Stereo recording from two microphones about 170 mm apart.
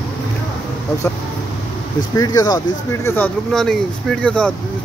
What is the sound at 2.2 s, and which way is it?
Speech, 20° left (ahead or behind).